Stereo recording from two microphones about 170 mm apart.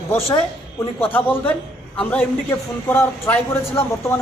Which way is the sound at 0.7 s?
10° left (ahead or behind).